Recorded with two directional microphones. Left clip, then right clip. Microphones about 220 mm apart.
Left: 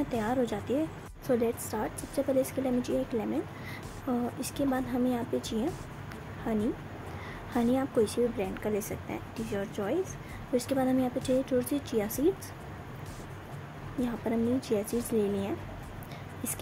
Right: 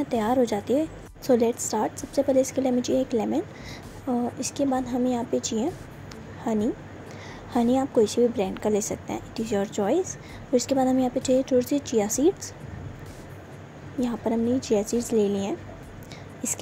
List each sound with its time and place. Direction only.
0.1 s a woman's voice: 20° right (ahead or behind)
14.0 s a woman's voice: 15° right (ahead or behind)